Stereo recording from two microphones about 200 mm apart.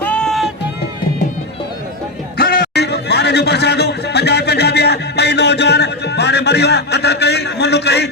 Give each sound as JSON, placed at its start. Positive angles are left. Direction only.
{"t": 0.0, "sound": "music", "side_deg": 5}
{"t": 2.4, "sound": "speech", "side_deg": 50}